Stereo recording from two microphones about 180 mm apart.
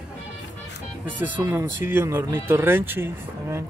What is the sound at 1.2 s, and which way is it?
Speech, 10° right (ahead or behind).